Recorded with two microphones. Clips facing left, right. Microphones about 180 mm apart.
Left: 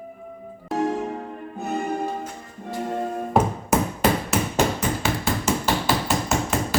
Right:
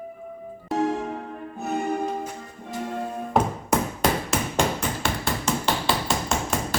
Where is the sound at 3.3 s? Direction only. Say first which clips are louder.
Left 2 dB; 5° left (ahead or behind).